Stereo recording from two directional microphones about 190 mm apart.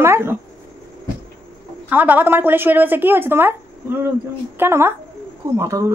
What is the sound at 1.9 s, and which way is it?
Speech, 10° right (ahead or behind).